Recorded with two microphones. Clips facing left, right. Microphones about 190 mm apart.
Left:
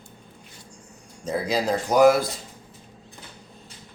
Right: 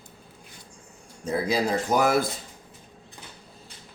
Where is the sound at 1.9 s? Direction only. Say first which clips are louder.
Left 7 dB; 55° right (ahead or behind).